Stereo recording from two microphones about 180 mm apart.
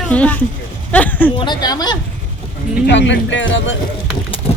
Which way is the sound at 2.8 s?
80° left.